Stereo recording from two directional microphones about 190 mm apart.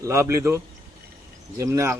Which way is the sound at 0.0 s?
15° right (ahead or behind).